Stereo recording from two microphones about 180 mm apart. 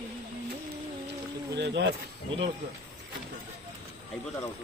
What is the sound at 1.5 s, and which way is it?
Speech, 70° right (ahead or behind).